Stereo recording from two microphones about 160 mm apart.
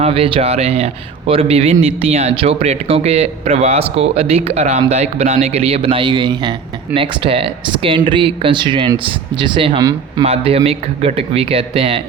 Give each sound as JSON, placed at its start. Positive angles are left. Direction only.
{"t": 0.0, "sound": "speech", "side_deg": -35}